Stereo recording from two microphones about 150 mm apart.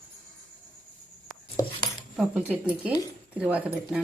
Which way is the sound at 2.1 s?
5° right (ahead or behind).